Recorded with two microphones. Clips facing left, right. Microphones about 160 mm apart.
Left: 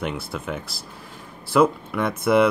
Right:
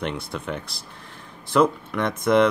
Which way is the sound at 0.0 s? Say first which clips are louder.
Even; 5° left (ahead or behind).